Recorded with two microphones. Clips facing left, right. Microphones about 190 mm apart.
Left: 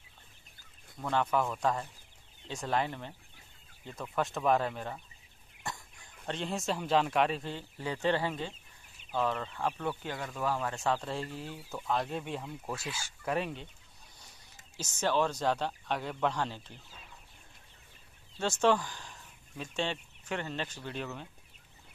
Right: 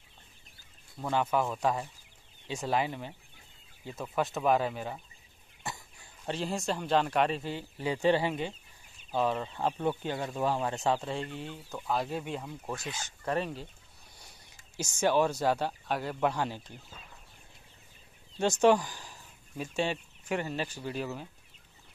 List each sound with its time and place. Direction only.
0.9 s speech: 5° right (ahead or behind)
5.7 s bird: 5° right (ahead or behind)
6.2 s speech: 5° right (ahead or behind)
7.7 s speech: 15° right (ahead or behind)
11.1 s speech: centre (ahead or behind)
14.8 s speech: 10° right (ahead or behind)
18.4 s speech: 15° right (ahead or behind)